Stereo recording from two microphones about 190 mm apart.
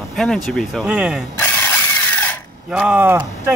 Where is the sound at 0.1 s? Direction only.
Centre (ahead or behind).